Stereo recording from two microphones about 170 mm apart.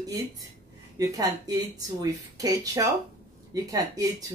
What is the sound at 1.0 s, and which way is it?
Speech, 20° right (ahead or behind).